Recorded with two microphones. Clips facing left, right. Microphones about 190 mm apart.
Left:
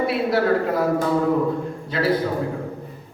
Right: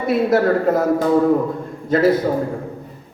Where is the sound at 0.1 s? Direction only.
45° right (ahead or behind).